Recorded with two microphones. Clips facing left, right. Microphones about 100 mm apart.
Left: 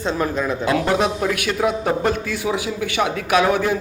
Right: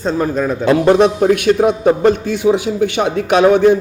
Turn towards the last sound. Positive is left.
turn(degrees=-25)  # may be behind; listen again after turning